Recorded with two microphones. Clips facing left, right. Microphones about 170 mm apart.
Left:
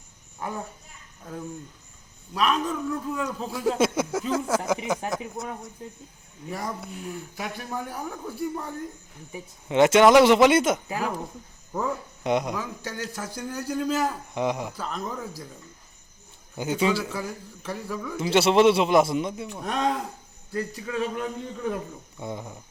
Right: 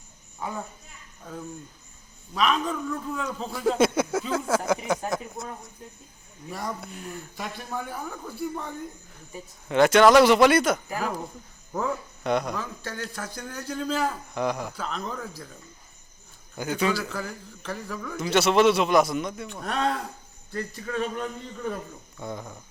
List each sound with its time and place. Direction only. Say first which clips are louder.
2.3 s a man's voice: even; 5° left (ahead or behind)
6.5 s speech: left 1 dB; 5° left (ahead or behind)
11.7 s a man's voice: even; centre (ahead or behind)
12.2 s speech: left 1 dB; 20° left (ahead or behind)
14.3 s speech: left 2 dB; 20° left (ahead or behind)
14.8 s speech: even; 5° left (ahead or behind)
16.6 s speech: left 2 dB; 20° left (ahead or behind)
17.0 s speech: left 1 dB; 10° left (ahead or behind)
18.2 s speech: left 2 dB; 25° left (ahead or behind)
19.5 s speech: right 1 dB; 10° left (ahead or behind)
22.2 s speech: left 1 dB; 20° left (ahead or behind)